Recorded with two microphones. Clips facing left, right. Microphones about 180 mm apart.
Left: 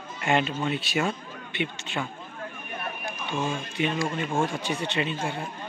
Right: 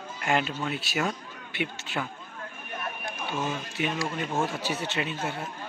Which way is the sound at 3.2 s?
5° right (ahead or behind).